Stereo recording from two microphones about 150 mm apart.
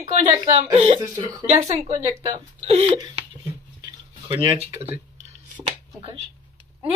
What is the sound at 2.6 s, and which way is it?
Speech, 40° right (ahead or behind).